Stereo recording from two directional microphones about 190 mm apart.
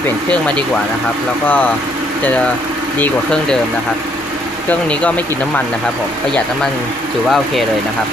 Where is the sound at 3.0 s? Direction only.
5° left (ahead or behind).